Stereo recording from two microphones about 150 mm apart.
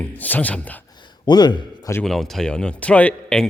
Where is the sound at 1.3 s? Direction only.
30° left (ahead or behind).